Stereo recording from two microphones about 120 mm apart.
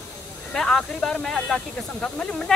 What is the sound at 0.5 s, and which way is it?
Speech, 5° left (ahead or behind).